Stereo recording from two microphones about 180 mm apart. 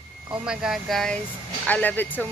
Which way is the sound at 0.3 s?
5° right (ahead or behind).